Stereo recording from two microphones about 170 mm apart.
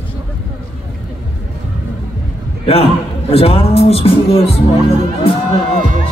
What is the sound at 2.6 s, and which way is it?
Speech, 35° left (ahead or behind).